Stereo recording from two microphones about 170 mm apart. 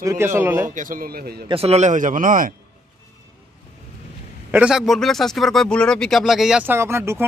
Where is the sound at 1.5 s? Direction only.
35° right (ahead or behind); by 2.5 s 50° right (ahead or behind).